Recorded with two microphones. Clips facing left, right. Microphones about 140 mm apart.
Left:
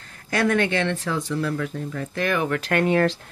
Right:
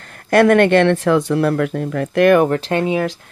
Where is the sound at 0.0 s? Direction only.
65° right (ahead or behind).